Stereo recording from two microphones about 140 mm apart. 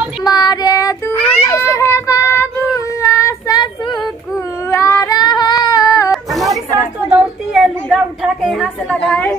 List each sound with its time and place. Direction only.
0.2 s child singing: 30° left (ahead or behind)
4.6 s female singing: 20° left (ahead or behind)
6.3 s a sound: centre (ahead or behind)